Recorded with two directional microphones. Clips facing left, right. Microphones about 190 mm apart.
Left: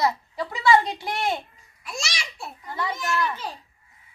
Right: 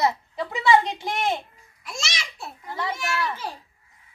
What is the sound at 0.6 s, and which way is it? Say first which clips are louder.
Speech: even; 20° right (ahead or behind).